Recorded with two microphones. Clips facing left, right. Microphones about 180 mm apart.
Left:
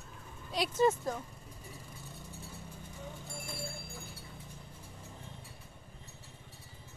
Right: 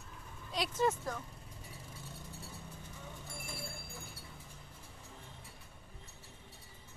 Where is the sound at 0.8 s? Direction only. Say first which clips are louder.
Left 5 dB; 20° left (ahead or behind).